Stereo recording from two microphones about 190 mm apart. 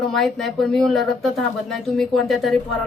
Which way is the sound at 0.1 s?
Centre (ahead or behind).